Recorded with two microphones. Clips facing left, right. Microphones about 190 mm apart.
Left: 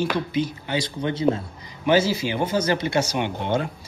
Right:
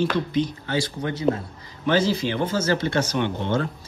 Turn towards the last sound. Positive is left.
turn(degrees=10)  # may be behind; listen again after turning